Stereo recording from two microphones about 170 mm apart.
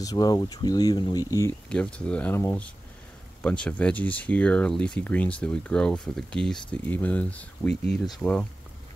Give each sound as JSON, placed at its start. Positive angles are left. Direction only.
{"t": 0.0, "sound": "speech", "side_deg": 20}
{"t": 1.7, "sound": "speech", "side_deg": 5}